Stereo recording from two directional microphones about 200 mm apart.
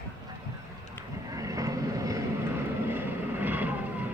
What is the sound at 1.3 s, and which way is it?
Vehicle, 15° right (ahead or behind).